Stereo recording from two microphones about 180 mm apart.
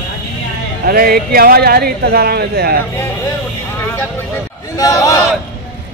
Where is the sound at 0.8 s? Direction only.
55° right (ahead or behind).